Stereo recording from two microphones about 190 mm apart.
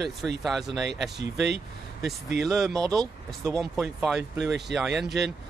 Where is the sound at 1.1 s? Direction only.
65° right (ahead or behind).